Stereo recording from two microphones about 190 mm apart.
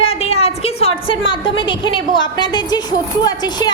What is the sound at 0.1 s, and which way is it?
A woman's voice, 30° left (ahead or behind).